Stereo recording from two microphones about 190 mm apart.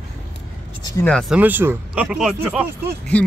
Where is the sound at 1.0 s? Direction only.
5° left (ahead or behind).